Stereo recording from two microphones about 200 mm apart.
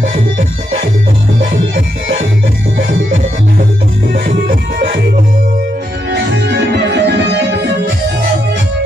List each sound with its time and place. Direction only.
0.1 s music: 35° right (ahead or behind)
4.1 s music: 45° right (ahead or behind)
6.1 s music: 60° right (ahead or behind)